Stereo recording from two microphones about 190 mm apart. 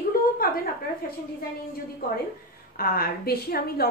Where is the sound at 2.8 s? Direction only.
50° left (ahead or behind).